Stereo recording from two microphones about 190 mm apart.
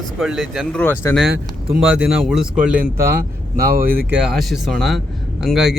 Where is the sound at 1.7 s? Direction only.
5° right (ahead or behind).